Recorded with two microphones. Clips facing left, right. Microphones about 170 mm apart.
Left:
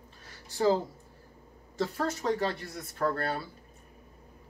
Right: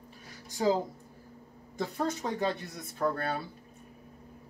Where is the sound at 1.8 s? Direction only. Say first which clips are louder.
Left 1 dB; 15° right (ahead or behind).